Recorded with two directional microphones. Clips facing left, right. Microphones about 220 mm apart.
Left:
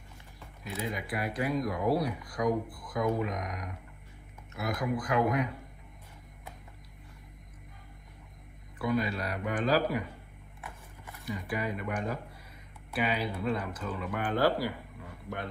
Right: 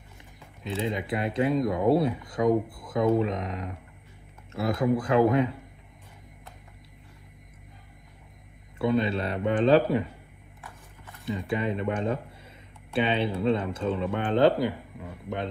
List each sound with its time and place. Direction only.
0.7 s speech: 25° right (ahead or behind)
8.7 s speech: 25° right (ahead or behind)
11.2 s speech: 25° right (ahead or behind)